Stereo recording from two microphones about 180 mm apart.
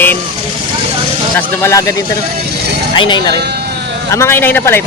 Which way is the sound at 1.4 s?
15° left (ahead or behind).